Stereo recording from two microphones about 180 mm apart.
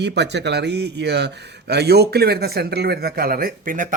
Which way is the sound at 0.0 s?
70° right (ahead or behind).